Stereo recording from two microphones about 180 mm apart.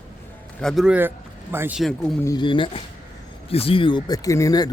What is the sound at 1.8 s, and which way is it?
Speech, centre (ahead or behind).